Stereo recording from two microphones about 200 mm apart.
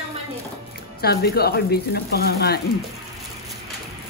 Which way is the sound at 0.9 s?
50° left (ahead or behind).